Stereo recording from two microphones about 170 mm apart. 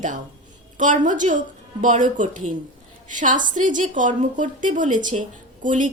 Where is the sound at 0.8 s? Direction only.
50° right (ahead or behind).